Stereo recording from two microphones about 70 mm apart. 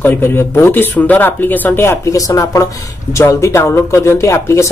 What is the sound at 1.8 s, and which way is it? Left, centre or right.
Speech, left.